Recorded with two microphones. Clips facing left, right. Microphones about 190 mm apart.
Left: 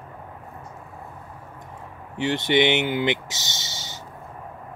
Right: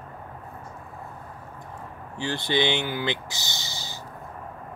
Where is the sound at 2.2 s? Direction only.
20° left (ahead or behind).